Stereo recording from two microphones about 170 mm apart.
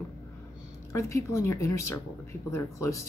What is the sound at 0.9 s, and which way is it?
Speech, 15° left (ahead or behind).